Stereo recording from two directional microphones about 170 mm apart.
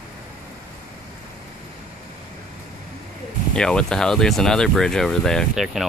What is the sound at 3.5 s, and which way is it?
Speech, 5° left (ahead or behind).